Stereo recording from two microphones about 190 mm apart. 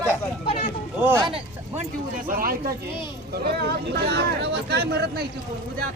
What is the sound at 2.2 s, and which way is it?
Speech, 50° right (ahead or behind).